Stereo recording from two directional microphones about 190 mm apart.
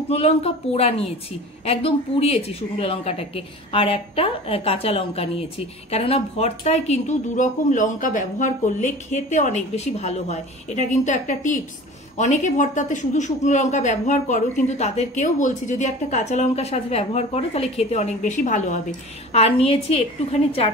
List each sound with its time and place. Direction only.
0.1 s speech: 35° left (ahead or behind)